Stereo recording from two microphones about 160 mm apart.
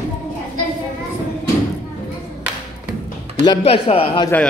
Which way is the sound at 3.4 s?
35° left (ahead or behind).